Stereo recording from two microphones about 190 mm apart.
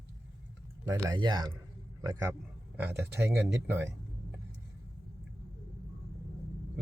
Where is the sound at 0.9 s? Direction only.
25° right (ahead or behind).